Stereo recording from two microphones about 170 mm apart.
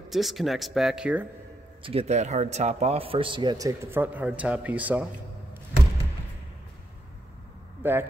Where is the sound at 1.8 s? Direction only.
35° right (ahead or behind); by 5.0 s 10° right (ahead or behind).